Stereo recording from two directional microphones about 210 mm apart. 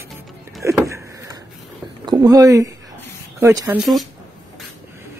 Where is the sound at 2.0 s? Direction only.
20° right (ahead or behind).